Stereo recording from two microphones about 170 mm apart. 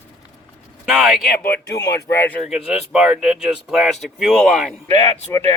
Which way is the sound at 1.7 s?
85° left.